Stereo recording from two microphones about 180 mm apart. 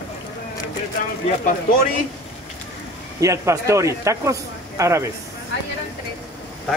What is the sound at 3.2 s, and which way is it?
Speech, 15° right (ahead or behind).